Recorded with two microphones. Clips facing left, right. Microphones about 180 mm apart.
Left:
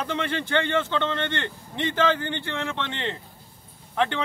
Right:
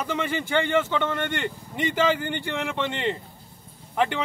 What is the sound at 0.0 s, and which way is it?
Speech, 10° right (ahead or behind).